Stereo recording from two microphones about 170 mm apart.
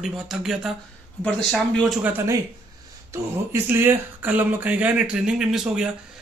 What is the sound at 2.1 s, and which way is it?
Speech, 15° right (ahead or behind).